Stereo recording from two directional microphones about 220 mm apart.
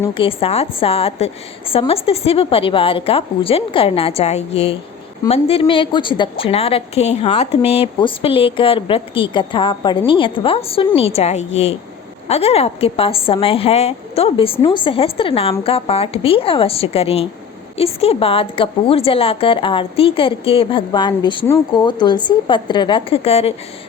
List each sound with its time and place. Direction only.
0.1 s speech: 25° left (ahead or behind)